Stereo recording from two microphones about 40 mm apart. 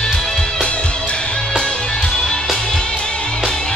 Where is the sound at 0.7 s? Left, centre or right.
Left.